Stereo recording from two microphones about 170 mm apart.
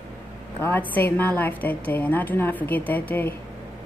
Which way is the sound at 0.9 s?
10° left (ahead or behind).